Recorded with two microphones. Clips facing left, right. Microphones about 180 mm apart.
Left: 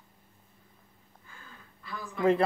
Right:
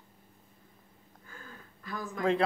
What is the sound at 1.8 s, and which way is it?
Speech, 45° right (ahead or behind).